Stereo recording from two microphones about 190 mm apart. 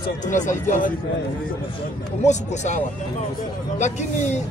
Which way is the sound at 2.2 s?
40° left (ahead or behind).